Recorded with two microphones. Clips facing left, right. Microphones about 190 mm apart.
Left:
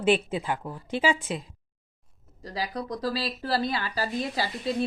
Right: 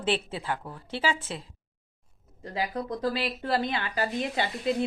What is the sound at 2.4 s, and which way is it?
Speech, 35° left (ahead or behind).